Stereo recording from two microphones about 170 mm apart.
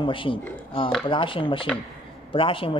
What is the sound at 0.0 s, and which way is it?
Speech, 30° left (ahead or behind).